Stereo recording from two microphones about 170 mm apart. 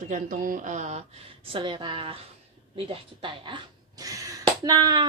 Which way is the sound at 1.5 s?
30° right (ahead or behind).